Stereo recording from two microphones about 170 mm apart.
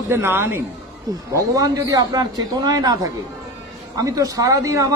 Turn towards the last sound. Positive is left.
turn(degrees=-20)  # may be behind; listen again after turning